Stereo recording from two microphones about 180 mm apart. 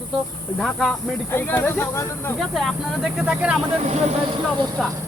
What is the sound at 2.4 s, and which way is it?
Speech, centre (ahead or behind).